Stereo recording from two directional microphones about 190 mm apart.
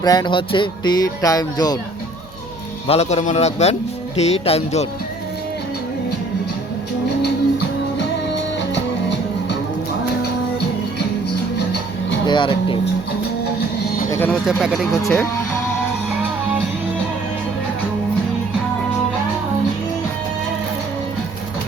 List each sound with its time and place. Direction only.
0.0 s speech: 20° left (ahead or behind)
2.8 s a man's voice: 35° left (ahead or behind)
8.7 s music: 65° left (ahead or behind)
12.2 s speech: 25° left (ahead or behind)
14.1 s speech: 10° left (ahead or behind)
14.4 s speech: centre (ahead or behind)
15.0 s speech: 10° left (ahead or behind)